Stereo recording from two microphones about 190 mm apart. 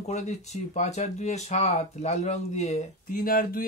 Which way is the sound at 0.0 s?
40° left (ahead or behind).